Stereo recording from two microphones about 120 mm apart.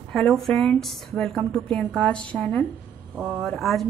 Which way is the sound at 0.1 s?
5° left (ahead or behind).